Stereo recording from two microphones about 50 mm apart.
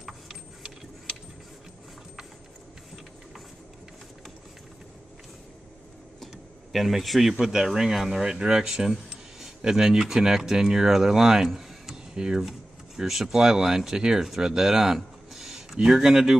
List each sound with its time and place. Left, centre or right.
6.2 s speech: centre
8.5 s a sound: centre
9.6 s speech: centre